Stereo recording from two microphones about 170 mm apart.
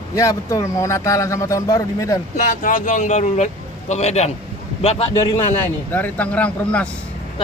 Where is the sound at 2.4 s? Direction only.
50° left (ahead or behind).